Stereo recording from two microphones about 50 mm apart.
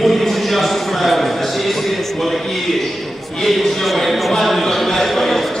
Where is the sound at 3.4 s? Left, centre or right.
Centre.